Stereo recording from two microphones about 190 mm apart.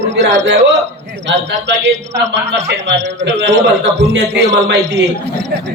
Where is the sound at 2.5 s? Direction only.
70° right (ahead or behind).